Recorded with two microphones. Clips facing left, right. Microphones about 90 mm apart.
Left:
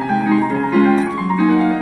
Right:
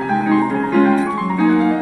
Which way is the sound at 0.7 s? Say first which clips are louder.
Even; 10° right (ahead or behind).